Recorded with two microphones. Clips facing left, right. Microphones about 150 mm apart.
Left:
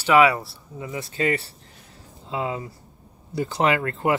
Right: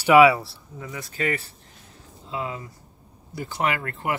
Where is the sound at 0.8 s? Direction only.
30° left (ahead or behind).